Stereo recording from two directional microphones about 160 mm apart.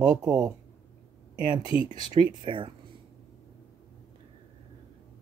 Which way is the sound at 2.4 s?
30° right (ahead or behind).